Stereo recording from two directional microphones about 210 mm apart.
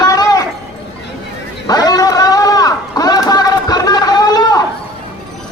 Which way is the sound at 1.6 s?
20° left (ahead or behind).